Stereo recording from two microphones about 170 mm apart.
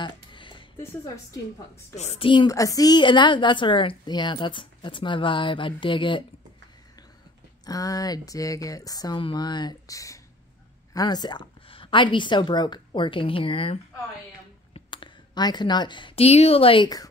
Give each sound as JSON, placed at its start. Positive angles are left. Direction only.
{"t": 0.0, "sound": "music", "side_deg": 30}
{"t": 0.7, "sound": "a woman's voice", "side_deg": 20}
{"t": 2.0, "sound": "a woman's voice", "side_deg": 35}
{"t": 2.4, "sound": "a woman's voice", "side_deg": 20}
{"t": 7.6, "sound": "a woman's voice", "side_deg": 20}